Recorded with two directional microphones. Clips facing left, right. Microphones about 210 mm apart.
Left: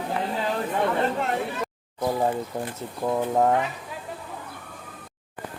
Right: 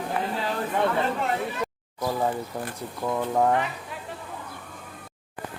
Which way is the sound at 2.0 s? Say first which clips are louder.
Left 2 dB; 20° left (ahead or behind).